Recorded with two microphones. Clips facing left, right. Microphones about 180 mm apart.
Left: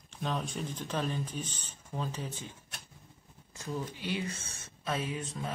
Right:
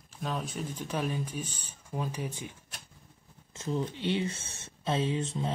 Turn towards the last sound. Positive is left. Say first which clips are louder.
# right 6 dB
turn(degrees=-25)  # may be behind; listen again after turning